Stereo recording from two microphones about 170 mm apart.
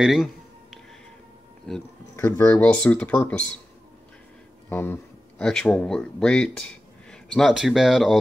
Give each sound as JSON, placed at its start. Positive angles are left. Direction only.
{"t": 0.0, "sound": "music", "side_deg": 0}
{"t": 2.1, "sound": "speech", "side_deg": 15}
{"t": 4.6, "sound": "speech", "side_deg": 15}